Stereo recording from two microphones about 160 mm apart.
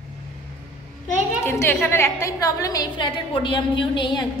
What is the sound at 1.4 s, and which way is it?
A woman's voice, 15° left (ahead or behind).